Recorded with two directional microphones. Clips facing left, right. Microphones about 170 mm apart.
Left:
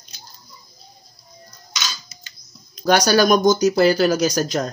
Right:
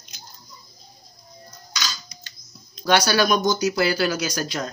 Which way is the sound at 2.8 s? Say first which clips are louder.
Left 4 dB; 45° left (ahead or behind).